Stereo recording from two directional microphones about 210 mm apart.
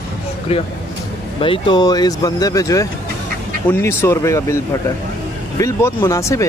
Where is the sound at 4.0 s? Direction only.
15° left (ahead or behind).